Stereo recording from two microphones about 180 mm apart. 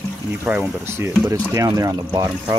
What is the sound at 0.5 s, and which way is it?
Speech, 10° right (ahead or behind).